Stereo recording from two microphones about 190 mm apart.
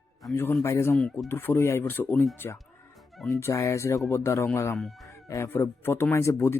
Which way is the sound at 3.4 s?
15° left (ahead or behind).